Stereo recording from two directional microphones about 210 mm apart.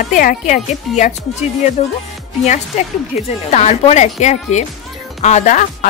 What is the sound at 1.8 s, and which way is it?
Music, 30° left (ahead or behind).